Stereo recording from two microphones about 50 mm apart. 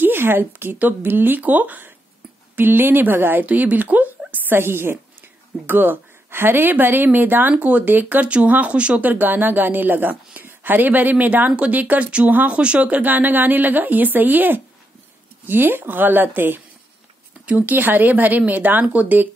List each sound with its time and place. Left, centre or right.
0.0 s a woman's voice: right
3.4 s a woman's voice: right
9.0 s a woman's voice: right